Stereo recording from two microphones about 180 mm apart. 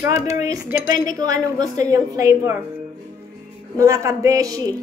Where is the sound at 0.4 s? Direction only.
20° right (ahead or behind).